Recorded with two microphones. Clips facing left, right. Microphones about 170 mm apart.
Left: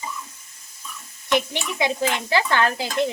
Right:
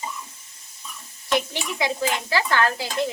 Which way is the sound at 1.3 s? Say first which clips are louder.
Left 2 dB; 20° left (ahead or behind).